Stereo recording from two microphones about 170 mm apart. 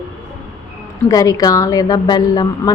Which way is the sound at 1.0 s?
20° left (ahead or behind).